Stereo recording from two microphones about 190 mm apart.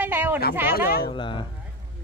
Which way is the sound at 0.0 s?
10° right (ahead or behind).